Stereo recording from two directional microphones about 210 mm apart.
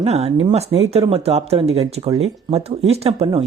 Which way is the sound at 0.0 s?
30° right (ahead or behind).